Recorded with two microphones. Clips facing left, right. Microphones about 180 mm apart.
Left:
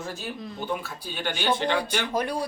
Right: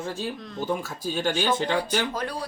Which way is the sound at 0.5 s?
40° right (ahead or behind).